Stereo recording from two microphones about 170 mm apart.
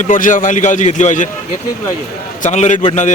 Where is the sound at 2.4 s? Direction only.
45° left (ahead or behind).